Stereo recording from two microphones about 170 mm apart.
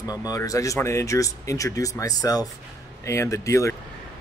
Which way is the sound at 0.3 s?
20° left (ahead or behind).